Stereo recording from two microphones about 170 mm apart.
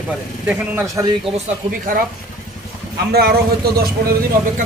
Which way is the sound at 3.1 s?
70° right (ahead or behind).